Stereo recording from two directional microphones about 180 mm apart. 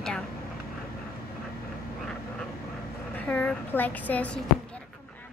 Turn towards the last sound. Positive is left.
turn(degrees=10)  # may be behind; listen again after turning